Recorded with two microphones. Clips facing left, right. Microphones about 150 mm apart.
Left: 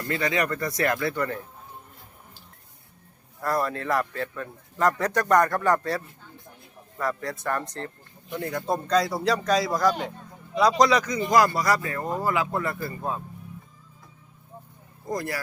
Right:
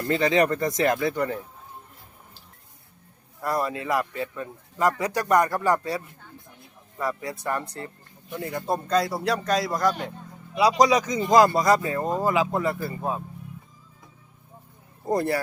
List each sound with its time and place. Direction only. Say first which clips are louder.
0.1 s speech: right 5 dB; 25° right (ahead or behind)
3.4 s speech: even; 15° right (ahead or behind)
7.0 s a man's voice: even; 10° right (ahead or behind)
15.0 s speech: right 6 dB; 30° right (ahead or behind)